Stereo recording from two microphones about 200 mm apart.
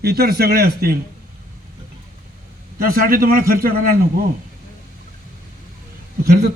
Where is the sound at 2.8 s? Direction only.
45° right (ahead or behind).